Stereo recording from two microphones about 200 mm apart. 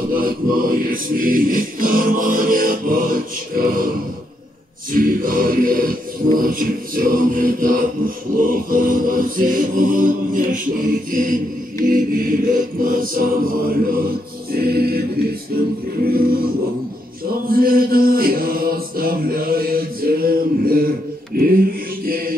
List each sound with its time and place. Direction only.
0.1 s music: 45° right (ahead or behind)
4.9 s music: 45° right (ahead or behind)
17.5 s mantra: 45° right (ahead or behind)
22.0 s music: 50° right (ahead or behind)